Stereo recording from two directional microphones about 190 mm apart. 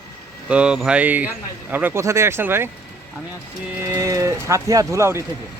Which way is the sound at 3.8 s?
15° right (ahead or behind).